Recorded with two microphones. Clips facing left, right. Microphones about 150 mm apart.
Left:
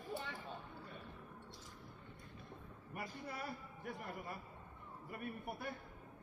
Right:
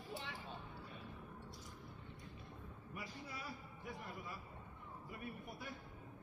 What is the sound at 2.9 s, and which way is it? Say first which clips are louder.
A man's voice: left 4 dB; 55° left (ahead or behind).